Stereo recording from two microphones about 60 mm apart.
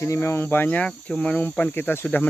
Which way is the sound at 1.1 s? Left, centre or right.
Left.